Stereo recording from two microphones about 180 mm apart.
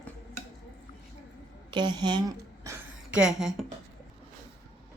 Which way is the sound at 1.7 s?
25° right (ahead or behind).